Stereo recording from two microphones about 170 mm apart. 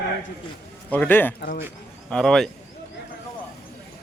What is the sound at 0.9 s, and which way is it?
Speech, 10° left (ahead or behind).